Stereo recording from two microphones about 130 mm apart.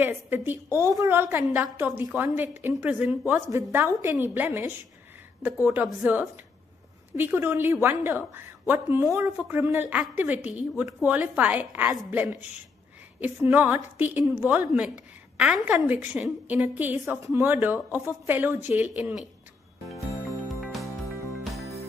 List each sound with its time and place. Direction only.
0.0 s a woman's voice: 15° right (ahead or behind)
20.0 s music: 25° left (ahead or behind)
20.2 s music: centre (ahead or behind)